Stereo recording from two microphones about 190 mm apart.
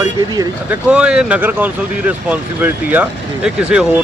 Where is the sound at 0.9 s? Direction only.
5° right (ahead or behind).